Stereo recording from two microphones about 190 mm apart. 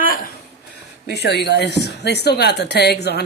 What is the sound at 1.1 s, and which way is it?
A woman's voice, 60° left (ahead or behind).